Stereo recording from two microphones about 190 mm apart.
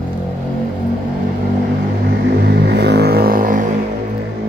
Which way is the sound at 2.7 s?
60° right (ahead or behind).